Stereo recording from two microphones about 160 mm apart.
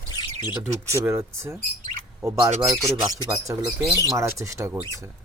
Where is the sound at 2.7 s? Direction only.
25° right (ahead or behind).